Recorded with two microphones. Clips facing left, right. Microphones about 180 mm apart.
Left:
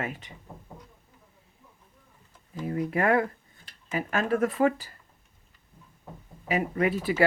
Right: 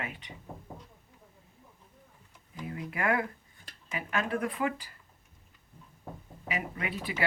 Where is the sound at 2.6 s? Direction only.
35° left (ahead or behind).